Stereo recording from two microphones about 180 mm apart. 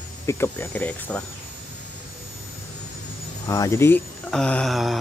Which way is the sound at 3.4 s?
20° left (ahead or behind).